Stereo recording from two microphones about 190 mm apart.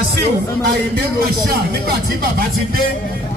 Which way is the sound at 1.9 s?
50° right (ahead or behind).